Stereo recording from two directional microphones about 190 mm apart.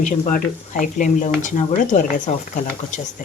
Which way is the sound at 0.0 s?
45° left (ahead or behind).